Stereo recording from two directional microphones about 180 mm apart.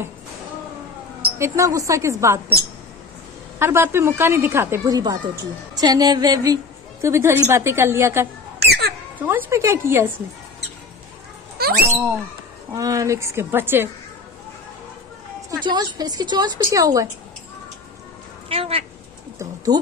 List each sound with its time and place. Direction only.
1.4 s a woman's voice: 15° right (ahead or behind)
3.5 s a woman's voice: 15° right (ahead or behind)
8.5 s a sound: 65° right (ahead or behind)
9.2 s a woman's voice: 10° right (ahead or behind)
11.6 s a sound: 60° right (ahead or behind)
12.7 s a woman's voice: 20° right (ahead or behind)
15.6 s a woman's voice: 25° right (ahead or behind)
18.5 s speech: 30° right (ahead or behind)
19.3 s a sound: 20° right (ahead or behind)